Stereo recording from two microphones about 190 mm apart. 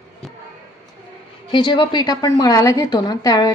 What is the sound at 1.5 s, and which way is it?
A woman's voice, 25° left (ahead or behind).